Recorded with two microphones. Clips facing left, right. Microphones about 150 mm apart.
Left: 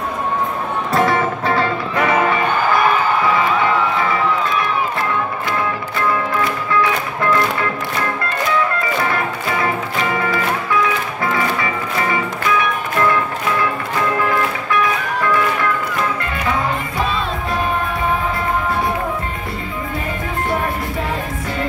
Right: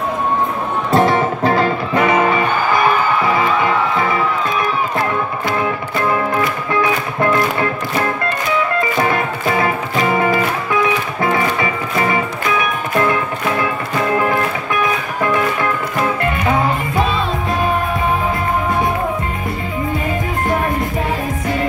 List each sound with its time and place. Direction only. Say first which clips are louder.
0.9 s music: right 3 dB; 35° right (ahead or behind)
10.1 s music: right 6 dB; 25° right (ahead or behind)